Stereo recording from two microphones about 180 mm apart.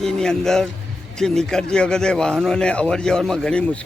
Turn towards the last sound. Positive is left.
turn(degrees=5)  # may be behind; listen again after turning